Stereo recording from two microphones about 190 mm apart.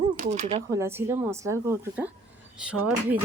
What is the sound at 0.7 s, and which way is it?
A woman's voice, 15° right (ahead or behind).